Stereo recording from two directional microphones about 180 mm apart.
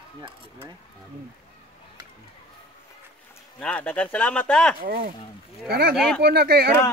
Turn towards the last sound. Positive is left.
turn(degrees=-60)  # may be behind; listen again after turning